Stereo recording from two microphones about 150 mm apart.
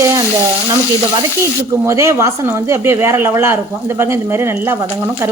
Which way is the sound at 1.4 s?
20° right (ahead or behind).